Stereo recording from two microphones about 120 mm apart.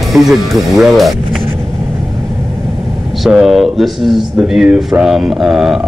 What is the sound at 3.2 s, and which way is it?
Speech, centre (ahead or behind).